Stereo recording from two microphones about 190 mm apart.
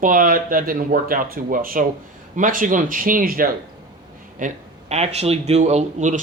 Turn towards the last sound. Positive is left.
turn(degrees=-40)  # may be behind; listen again after turning